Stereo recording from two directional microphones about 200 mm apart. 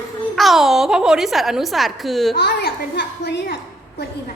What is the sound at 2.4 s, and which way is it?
A woman's voice, 55° left (ahead or behind).